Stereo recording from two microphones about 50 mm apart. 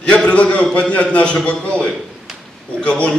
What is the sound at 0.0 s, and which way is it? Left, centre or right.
A man's voice, left.